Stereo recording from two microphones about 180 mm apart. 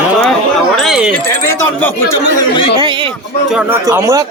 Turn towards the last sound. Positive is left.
turn(degrees=-15)  # may be behind; listen again after turning